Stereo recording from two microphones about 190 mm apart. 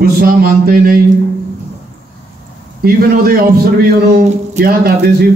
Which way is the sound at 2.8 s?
50° right (ahead or behind).